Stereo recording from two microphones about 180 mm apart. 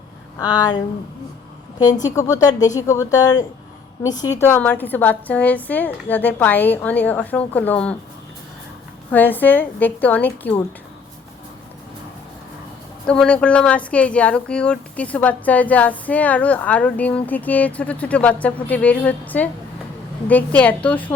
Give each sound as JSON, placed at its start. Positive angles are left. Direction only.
{"t": 0.3, "sound": "speech", "side_deg": 20}
{"t": 1.8, "sound": "speech", "side_deg": 20}
{"t": 9.1, "sound": "speech", "side_deg": 10}
{"t": 13.1, "sound": "speech", "side_deg": 5}